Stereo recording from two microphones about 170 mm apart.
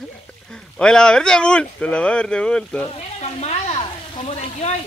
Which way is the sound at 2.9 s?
40° left (ahead or behind).